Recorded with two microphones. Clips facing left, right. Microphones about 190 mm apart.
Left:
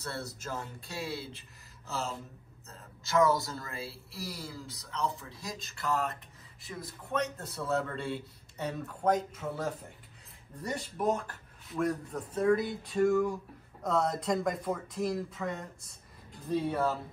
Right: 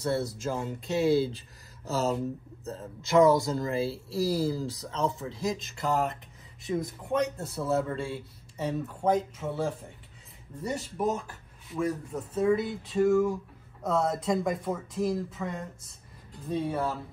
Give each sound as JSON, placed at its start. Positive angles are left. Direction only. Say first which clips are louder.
{"t": 0.0, "sound": "speech", "louder": "right 10 dB", "side_deg": -15}
{"t": 3.1, "sound": "speech", "louder": "right 6 dB", "side_deg": -20}
{"t": 3.8, "sound": "speech", "louder": "right 13 dB", "side_deg": -30}
{"t": 6.6, "sound": "a man's voice", "louder": "right 12 dB", "side_deg": -20}
{"t": 10.6, "sound": "a man's voice", "louder": "right 3 dB", "side_deg": -5}